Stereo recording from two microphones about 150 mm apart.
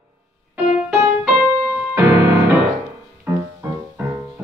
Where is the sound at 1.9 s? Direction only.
20° right (ahead or behind).